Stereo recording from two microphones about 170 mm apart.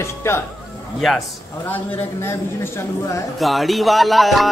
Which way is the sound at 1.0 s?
Centre (ahead or behind).